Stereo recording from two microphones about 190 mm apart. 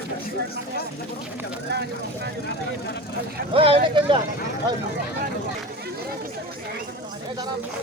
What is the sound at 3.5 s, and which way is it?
Speech, 30° right (ahead or behind).